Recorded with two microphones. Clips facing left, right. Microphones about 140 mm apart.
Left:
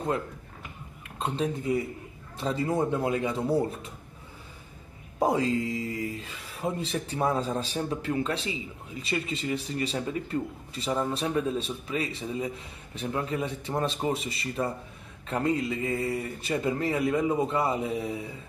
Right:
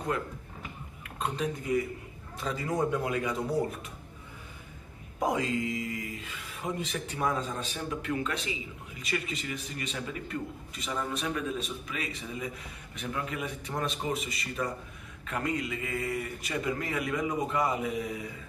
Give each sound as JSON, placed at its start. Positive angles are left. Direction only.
{"t": 1.1, "sound": "speech", "side_deg": 30}
{"t": 5.2, "sound": "speech", "side_deg": 30}